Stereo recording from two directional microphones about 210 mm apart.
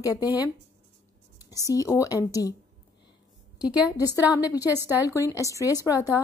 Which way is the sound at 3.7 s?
5° right (ahead or behind).